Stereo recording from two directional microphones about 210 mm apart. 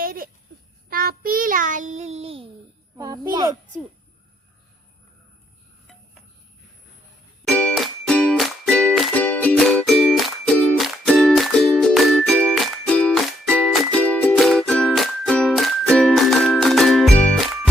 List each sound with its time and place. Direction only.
0.0 s a sound: 45° right (ahead or behind)
0.9 s child singing: 45° right (ahead or behind); by 2.5 s 25° right (ahead or behind)
3.3 s a child's voice: 20° right (ahead or behind)
7.5 s music: 5° left (ahead or behind)